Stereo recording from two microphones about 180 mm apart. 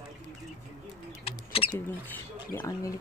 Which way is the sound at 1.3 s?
35° left (ahead or behind).